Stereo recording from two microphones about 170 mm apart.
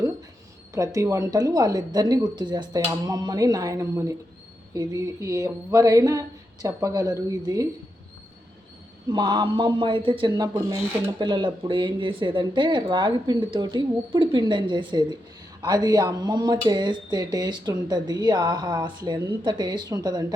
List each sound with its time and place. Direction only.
0.7 s speech: 20° right (ahead or behind)
9.0 s speech: 25° right (ahead or behind)
11.2 s speech: 25° right (ahead or behind)